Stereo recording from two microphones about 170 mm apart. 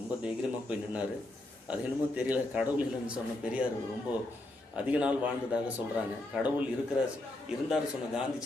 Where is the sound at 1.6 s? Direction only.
10° right (ahead or behind).